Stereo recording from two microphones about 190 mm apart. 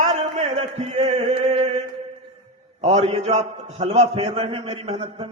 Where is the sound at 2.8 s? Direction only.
35° right (ahead or behind).